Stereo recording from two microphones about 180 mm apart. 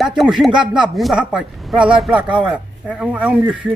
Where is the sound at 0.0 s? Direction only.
Centre (ahead or behind).